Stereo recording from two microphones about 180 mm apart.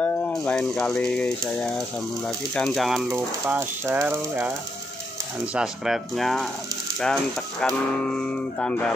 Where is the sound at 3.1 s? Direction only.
15° right (ahead or behind).